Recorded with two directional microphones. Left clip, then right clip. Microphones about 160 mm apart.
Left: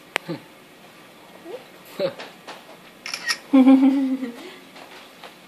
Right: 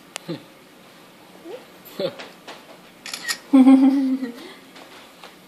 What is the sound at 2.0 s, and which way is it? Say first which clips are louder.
Speech: left 1 dB; 10° right (ahead or behind).